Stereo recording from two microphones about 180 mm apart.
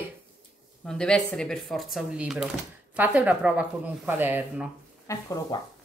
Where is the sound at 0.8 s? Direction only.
5° left (ahead or behind).